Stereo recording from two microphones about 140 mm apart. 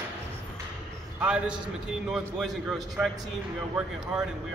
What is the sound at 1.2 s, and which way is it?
A man's voice, 5° right (ahead or behind).